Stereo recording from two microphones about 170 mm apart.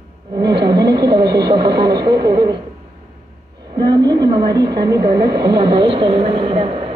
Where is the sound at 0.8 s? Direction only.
75° right (ahead or behind).